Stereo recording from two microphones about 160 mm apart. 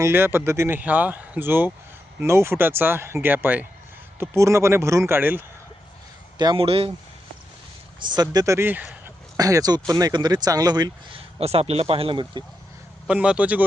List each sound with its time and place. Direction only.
0.0 s speech: 15° right (ahead or behind)
6.4 s speech: 30° right (ahead or behind)
7.9 s speech: 30° right (ahead or behind); by 9.1 s 10° right (ahead or behind)
9.4 s speech: 20° right (ahead or behind)
11.3 s speech: 40° right (ahead or behind)
13.1 s speech: 5° right (ahead or behind)